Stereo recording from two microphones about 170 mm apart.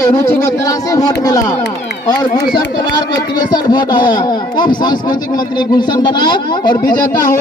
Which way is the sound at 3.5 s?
25° left (ahead or behind).